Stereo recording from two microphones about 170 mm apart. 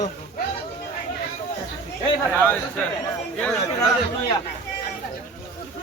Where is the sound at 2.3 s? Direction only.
10° left (ahead or behind).